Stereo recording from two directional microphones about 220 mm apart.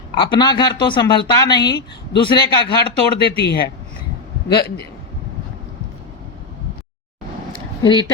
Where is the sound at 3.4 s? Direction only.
50° left (ahead or behind).